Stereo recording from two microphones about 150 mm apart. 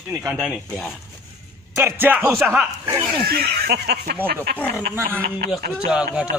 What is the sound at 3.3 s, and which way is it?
Speech, 90° right.